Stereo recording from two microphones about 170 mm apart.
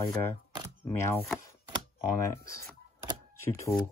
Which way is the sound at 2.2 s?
15° left (ahead or behind).